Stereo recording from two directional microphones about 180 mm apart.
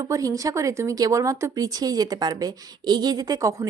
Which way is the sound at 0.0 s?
20° right (ahead or behind).